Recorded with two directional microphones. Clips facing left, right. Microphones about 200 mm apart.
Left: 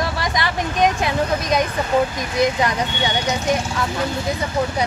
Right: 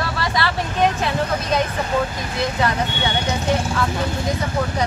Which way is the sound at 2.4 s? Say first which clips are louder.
Left 3 dB; 15° left (ahead or behind).